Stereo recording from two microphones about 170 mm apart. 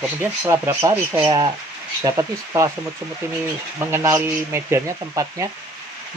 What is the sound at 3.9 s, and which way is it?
Speech, 15° right (ahead or behind).